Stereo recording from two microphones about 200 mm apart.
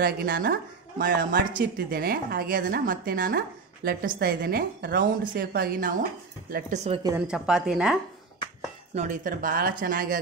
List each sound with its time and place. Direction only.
0.0 s a woman's voice: 45° right (ahead or behind)
6.5 s speech: 35° right (ahead or behind)
7.2 s speech: 5° right (ahead or behind)
8.9 s a woman's voice: 40° right (ahead or behind)